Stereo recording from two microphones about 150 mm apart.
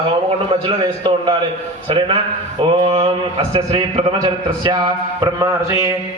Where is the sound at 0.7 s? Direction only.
30° right (ahead or behind).